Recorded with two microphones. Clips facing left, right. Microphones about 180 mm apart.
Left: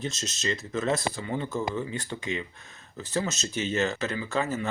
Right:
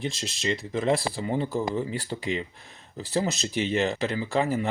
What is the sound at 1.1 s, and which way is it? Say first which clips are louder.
Speech: right 4 dB; 30° right (ahead or behind).